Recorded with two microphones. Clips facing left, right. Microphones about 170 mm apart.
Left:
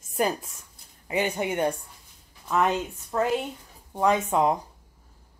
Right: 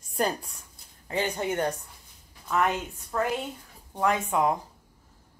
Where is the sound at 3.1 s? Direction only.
20° left (ahead or behind).